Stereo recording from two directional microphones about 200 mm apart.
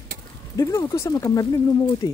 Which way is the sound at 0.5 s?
15° left (ahead or behind).